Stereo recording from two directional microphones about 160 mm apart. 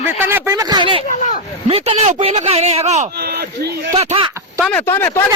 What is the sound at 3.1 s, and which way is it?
Speech, 85° right.